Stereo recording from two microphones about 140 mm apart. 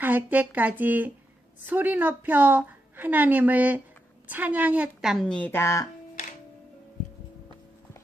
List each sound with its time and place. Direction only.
0.0 s a woman's voice: 15° right (ahead or behind)
5.3 s a woman's voice: 15° left (ahead or behind)